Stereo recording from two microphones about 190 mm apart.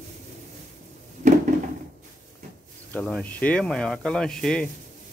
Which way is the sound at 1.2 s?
35° right (ahead or behind).